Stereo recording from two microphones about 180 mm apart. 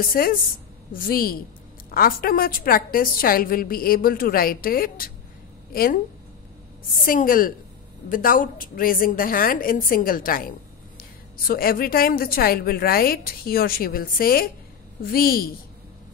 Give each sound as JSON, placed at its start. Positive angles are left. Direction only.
{"t": 0.0, "sound": "a woman's voice", "side_deg": 55}
{"t": 7.0, "sound": "a woman's voice", "side_deg": 50}